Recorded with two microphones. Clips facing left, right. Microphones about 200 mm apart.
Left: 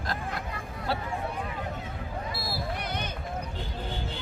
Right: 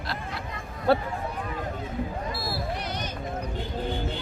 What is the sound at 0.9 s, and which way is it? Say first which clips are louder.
Speech: right 10 dB; 55° right (ahead or behind).